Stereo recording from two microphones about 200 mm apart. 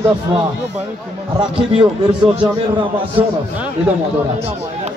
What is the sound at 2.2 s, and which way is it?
Speech, 25° right (ahead or behind).